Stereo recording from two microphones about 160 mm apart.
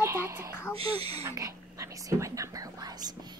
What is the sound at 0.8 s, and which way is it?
Speech, 35° right (ahead or behind).